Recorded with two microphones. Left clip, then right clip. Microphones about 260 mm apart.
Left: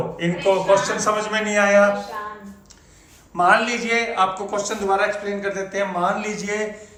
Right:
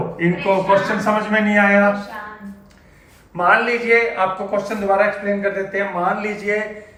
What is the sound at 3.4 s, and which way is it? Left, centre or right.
Speech, centre.